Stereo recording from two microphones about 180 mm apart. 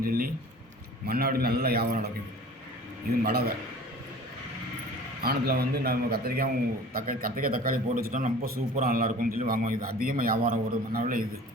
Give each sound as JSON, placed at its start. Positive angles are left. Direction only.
{"t": 0.0, "sound": "a man's voice", "side_deg": -55}
{"t": 3.2, "sound": "a man's voice", "side_deg": -60}
{"t": 5.2, "sound": "a man's voice", "side_deg": -60}